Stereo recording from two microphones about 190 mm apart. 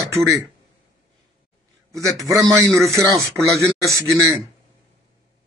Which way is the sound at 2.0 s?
15° right (ahead or behind).